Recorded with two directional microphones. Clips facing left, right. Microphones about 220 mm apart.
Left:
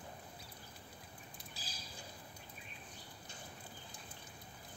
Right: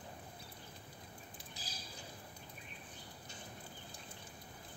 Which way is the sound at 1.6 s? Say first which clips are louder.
Right 1 dB; 20° right (ahead or behind).